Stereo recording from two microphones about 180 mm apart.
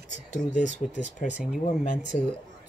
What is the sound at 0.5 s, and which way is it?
Speech, 45° left (ahead or behind).